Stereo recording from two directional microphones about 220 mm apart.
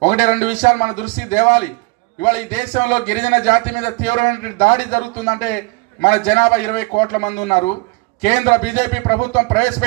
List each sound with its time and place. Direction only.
0.0 s a man's voice: 30° left (ahead or behind)